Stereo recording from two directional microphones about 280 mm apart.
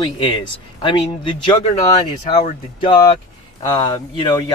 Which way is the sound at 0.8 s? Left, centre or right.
Centre.